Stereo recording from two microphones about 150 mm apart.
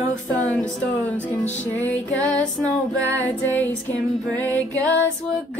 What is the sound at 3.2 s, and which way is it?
Music, 10° left (ahead or behind).